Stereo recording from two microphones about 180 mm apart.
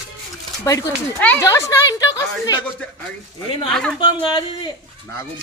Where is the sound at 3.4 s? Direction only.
30° left (ahead or behind).